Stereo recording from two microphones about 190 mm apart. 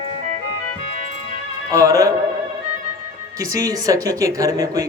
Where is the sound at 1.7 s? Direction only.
20° right (ahead or behind).